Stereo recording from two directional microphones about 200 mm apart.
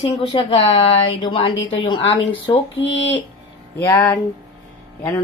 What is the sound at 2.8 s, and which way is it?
Speech, 65° left (ahead or behind).